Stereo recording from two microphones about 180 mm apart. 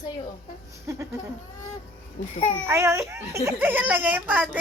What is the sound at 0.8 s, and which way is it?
Speech, 15° right (ahead or behind).